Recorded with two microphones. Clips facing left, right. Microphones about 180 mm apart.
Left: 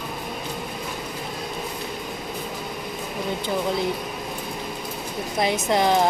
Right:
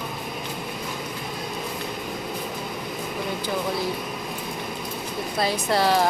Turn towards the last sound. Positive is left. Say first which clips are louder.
# left 1 dB
turn(degrees=20)  # may be behind; listen again after turning